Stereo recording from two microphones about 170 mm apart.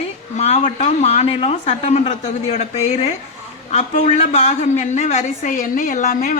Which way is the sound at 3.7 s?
40° left (ahead or behind).